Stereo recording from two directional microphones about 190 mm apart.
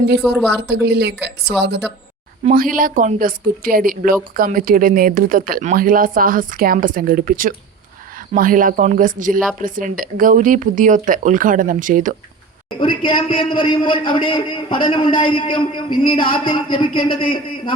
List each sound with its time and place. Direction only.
0.2 s a woman's voice: centre (ahead or behind)
0.7 s speech: 65° right (ahead or behind)
2.4 s a woman's voice: 45° right (ahead or behind)
12.8 s a man's voice: 25° left (ahead or behind)